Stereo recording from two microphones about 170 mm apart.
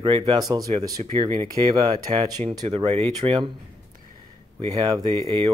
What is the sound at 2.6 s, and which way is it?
Speech, 35° right (ahead or behind).